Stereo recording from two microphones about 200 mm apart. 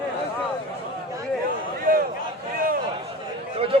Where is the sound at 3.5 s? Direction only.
30° right (ahead or behind).